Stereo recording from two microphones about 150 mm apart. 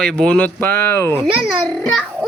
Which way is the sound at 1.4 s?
5° left (ahead or behind).